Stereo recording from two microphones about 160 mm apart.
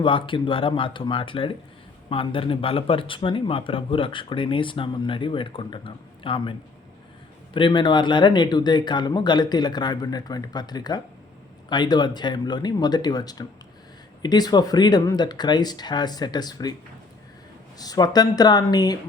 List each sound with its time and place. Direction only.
0.0 s speech: 30° left (ahead or behind)
7.5 s speech: 30° left (ahead or behind)
17.7 s speech: 25° left (ahead or behind)